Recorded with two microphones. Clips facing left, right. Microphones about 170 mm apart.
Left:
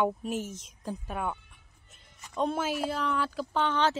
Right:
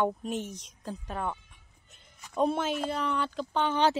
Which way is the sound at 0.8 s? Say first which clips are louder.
Left 1 dB; 10° left (ahead or behind).